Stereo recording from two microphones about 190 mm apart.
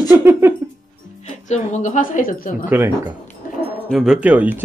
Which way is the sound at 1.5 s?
40° left (ahead or behind).